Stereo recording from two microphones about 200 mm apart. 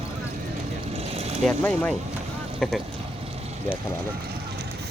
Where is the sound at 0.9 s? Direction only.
30° right (ahead or behind).